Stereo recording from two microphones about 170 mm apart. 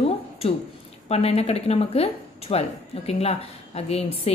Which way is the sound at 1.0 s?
35° left (ahead or behind).